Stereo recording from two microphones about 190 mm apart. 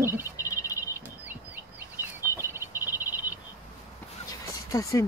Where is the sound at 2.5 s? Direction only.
10° right (ahead or behind).